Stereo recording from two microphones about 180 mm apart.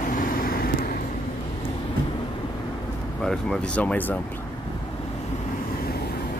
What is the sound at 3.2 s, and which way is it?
Speech, 5° left (ahead or behind).